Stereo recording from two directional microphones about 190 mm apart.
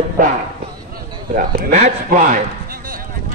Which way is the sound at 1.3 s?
40° right (ahead or behind).